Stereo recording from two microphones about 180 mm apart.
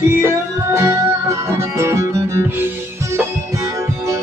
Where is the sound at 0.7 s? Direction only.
15° right (ahead or behind).